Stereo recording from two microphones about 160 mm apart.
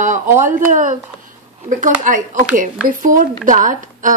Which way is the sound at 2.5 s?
55° right (ahead or behind).